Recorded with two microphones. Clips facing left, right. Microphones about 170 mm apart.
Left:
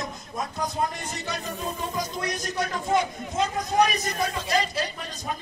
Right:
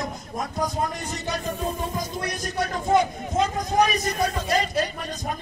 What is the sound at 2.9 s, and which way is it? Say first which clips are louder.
A man's voice: right 5 dB; 45° right (ahead or behind).